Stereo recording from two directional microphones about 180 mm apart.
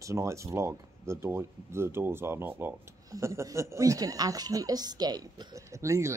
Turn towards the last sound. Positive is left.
turn(degrees=-15)  # may be behind; listen again after turning